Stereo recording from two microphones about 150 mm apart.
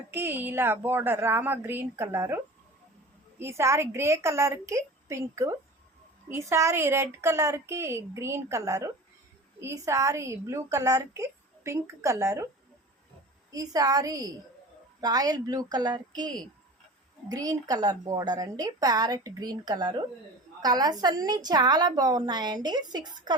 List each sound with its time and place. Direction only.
0.1 s a woman's voice: 15° right (ahead or behind)
13.5 s a woman's voice: 25° right (ahead or behind)